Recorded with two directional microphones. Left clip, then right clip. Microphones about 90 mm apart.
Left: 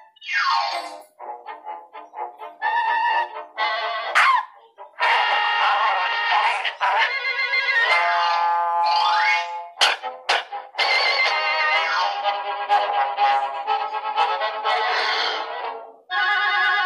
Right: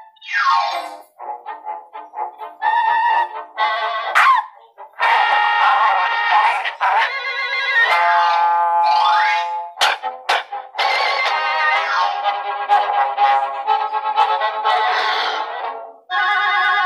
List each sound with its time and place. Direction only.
0.3 s music: 40° right (ahead or behind)